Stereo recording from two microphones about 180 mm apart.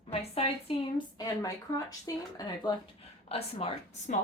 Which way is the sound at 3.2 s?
35° left (ahead or behind).